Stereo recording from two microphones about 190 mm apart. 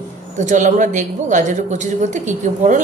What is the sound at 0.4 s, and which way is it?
A woman's voice, 40° right (ahead or behind).